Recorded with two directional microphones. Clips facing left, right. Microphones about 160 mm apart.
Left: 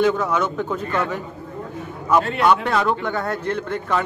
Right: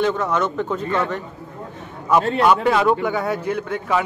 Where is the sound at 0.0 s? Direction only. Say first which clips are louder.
Left 1 dB; centre (ahead or behind).